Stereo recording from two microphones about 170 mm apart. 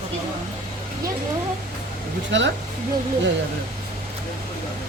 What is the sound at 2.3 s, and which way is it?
Speech, 90° right.